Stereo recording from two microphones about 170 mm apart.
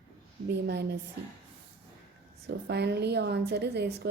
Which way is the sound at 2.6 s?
80° right.